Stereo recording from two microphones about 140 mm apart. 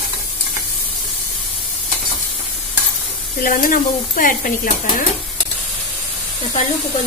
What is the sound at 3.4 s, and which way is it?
Speech, 80° left.